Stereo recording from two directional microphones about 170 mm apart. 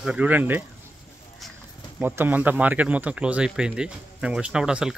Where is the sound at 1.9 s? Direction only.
10° right (ahead or behind).